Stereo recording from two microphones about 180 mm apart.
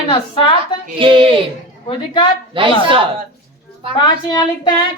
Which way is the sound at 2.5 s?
30° right (ahead or behind).